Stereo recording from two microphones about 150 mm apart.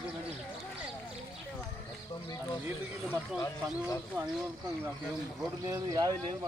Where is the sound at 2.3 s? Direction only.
25° left (ahead or behind).